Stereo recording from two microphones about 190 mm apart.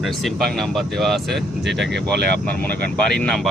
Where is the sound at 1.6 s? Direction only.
65° right (ahead or behind).